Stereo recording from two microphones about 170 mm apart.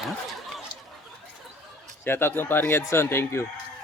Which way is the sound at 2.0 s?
15° left (ahead or behind).